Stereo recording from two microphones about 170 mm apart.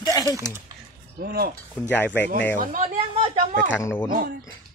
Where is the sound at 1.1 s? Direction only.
65° right (ahead or behind).